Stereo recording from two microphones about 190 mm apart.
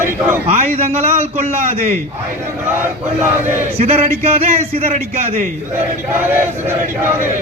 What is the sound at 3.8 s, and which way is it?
A man's voice, 30° right (ahead or behind).